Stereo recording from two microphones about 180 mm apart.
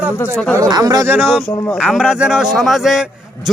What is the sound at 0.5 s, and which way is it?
Speech, 20° right (ahead or behind).